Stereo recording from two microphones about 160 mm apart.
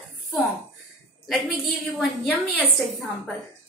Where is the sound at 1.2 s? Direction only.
Centre (ahead or behind).